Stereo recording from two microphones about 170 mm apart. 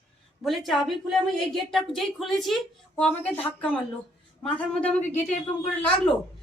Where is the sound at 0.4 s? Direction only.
Centre (ahead or behind).